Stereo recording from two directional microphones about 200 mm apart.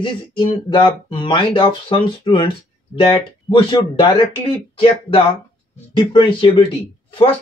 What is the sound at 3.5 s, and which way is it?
Speech, 25° left (ahead or behind).